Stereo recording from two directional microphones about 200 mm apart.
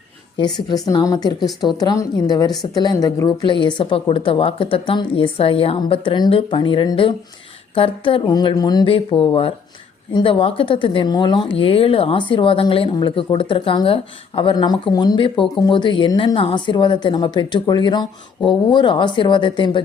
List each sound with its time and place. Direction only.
0.3 s speech: 20° left (ahead or behind)